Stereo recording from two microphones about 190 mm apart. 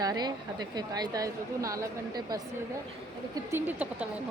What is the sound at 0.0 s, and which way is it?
A woman's voice, 20° right (ahead or behind).